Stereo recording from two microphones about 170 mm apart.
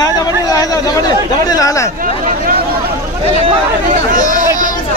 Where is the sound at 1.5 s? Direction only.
20° left (ahead or behind).